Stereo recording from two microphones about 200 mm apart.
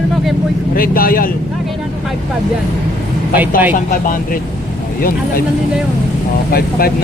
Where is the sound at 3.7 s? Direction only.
40° left (ahead or behind).